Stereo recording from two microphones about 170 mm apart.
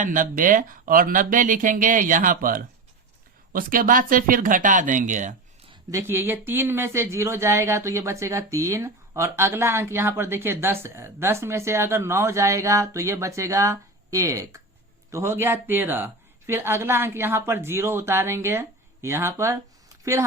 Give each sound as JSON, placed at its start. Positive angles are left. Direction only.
{"t": 0.0, "sound": "speech", "side_deg": -50}
{"t": 5.9, "sound": "speech", "side_deg": -15}